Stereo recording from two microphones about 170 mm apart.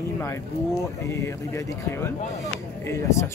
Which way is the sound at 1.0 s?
15° left (ahead or behind).